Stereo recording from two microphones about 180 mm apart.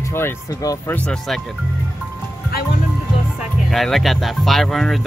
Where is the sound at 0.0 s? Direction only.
15° left (ahead or behind).